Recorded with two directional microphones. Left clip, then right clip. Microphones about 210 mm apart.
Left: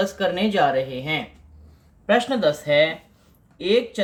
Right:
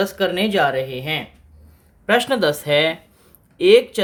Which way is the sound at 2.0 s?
45° right (ahead or behind).